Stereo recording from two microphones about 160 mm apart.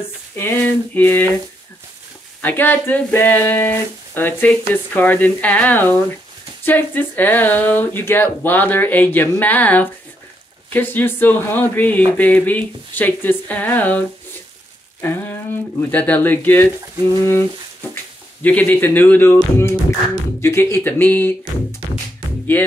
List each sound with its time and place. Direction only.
0.4 s speech: 10° left (ahead or behind)
2.4 s speech: 15° left (ahead or behind)
15.0 s a sound: 15° left (ahead or behind)
15.9 s speech: 10° left (ahead or behind)